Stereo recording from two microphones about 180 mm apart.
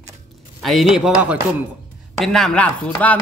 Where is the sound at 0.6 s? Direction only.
Centre (ahead or behind).